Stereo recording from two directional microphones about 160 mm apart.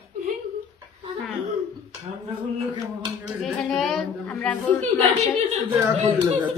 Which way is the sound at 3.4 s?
Centre (ahead or behind).